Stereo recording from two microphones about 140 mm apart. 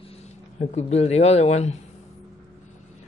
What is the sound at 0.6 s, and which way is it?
Speech, 50° left (ahead or behind).